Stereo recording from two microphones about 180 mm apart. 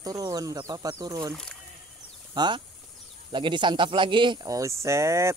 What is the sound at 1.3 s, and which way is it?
Speech, 5° left (ahead or behind).